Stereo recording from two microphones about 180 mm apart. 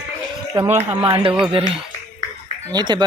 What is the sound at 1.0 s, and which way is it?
Speech, 30° right (ahead or behind).